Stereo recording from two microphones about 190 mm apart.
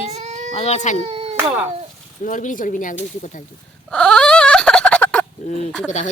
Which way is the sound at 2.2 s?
40° left (ahead or behind).